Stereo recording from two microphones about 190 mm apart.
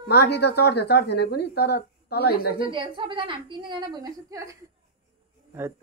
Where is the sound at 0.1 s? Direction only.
60° left (ahead or behind).